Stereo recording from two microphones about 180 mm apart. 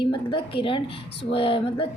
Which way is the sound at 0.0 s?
25° left (ahead or behind).